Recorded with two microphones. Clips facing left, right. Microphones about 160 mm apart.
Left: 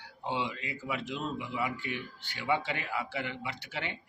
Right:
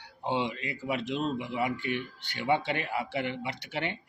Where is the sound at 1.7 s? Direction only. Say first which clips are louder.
Right 5 dB; 65° right (ahead or behind).